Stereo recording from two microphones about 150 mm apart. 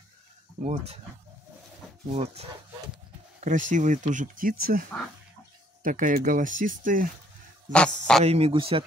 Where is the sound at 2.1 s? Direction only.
45° right (ahead or behind).